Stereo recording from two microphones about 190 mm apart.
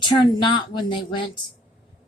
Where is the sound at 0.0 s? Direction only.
25° left (ahead or behind).